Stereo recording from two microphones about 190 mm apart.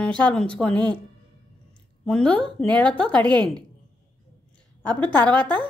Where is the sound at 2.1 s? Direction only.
5° left (ahead or behind).